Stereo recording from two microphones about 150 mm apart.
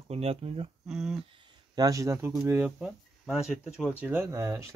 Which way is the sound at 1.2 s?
30° right (ahead or behind).